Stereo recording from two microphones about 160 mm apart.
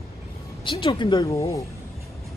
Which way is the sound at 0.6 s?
30° left (ahead or behind).